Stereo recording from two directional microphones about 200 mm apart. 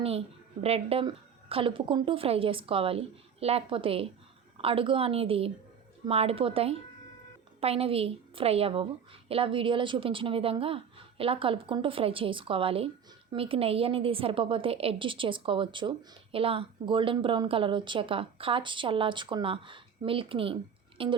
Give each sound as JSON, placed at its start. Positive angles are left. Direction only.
{"t": 0.0, "sound": "a woman's voice", "side_deg": -30}